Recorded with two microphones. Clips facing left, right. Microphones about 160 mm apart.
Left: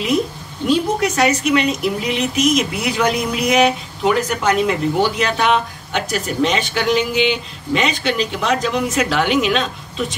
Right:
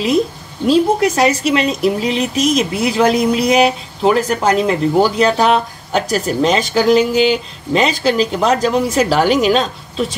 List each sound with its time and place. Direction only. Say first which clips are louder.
0.7 s speech: right 5 dB; 35° right (ahead or behind)